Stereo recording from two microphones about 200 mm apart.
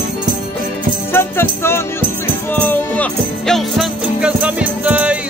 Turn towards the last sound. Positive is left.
turn(degrees=-5)  # may be behind; listen again after turning